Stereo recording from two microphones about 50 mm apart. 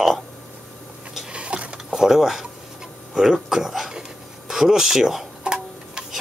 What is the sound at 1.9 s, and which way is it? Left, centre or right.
Speech, centre.